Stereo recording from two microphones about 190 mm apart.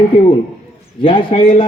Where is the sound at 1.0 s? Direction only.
25° left (ahead or behind).